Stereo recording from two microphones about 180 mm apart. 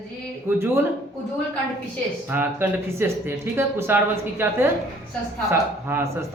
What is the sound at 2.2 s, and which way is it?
Speech, 10° right (ahead or behind).